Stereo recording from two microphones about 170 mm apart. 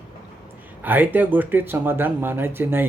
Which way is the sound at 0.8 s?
10° right (ahead or behind).